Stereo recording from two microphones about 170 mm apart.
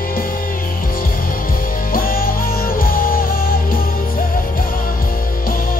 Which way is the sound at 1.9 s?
55° left (ahead or behind).